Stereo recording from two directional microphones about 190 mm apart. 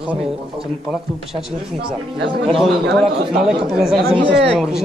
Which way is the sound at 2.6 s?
Centre (ahead or behind).